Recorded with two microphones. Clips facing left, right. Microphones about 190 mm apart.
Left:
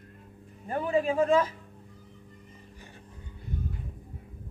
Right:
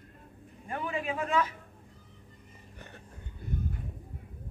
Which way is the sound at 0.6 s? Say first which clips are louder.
Left 7 dB; 35° left (ahead or behind).